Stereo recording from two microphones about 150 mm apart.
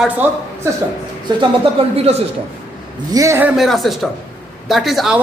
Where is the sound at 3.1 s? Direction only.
20° right (ahead or behind).